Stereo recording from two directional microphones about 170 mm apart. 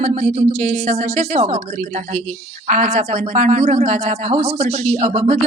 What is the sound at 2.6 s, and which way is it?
Speech, 40° right (ahead or behind).